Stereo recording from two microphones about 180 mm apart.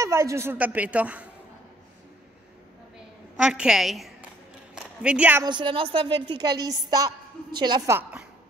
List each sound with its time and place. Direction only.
0.0 s a woman's voice: 15° right (ahead or behind)
3.3 s a woman's voice: 5° right (ahead or behind)
5.4 s a woman's voice: 25° right (ahead or behind)